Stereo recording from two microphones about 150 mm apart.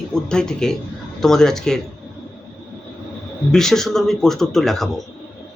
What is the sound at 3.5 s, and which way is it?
Speech, 5° left (ahead or behind).